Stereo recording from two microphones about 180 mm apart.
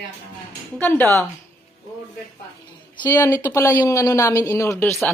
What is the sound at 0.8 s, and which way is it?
Speech, 10° left (ahead or behind).